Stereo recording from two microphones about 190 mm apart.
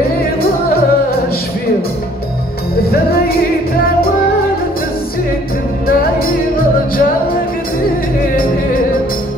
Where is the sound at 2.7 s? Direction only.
55° left (ahead or behind).